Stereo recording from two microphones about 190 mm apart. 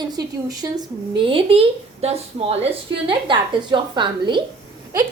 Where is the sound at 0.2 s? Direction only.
20° right (ahead or behind).